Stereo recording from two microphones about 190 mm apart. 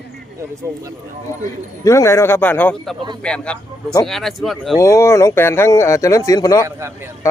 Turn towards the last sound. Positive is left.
turn(degrees=20)  # may be behind; listen again after turning